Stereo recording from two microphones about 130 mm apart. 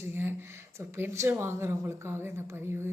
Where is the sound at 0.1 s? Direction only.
15° right (ahead or behind).